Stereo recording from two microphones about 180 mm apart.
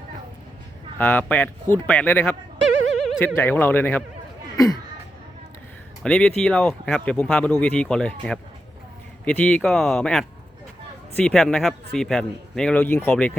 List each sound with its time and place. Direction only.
0.9 s speech: 10° left (ahead or behind)
6.0 s speech: 5° left (ahead or behind)